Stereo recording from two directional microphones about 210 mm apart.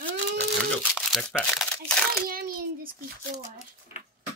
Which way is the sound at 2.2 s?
45° right (ahead or behind).